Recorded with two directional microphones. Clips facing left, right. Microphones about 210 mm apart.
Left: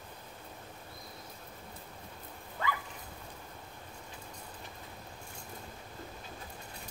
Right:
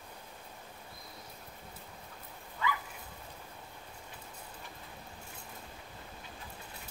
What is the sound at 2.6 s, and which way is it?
Dog, 45° left (ahead or behind).